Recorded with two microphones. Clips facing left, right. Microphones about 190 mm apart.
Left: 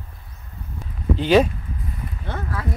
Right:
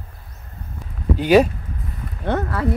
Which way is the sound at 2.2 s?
65° right (ahead or behind).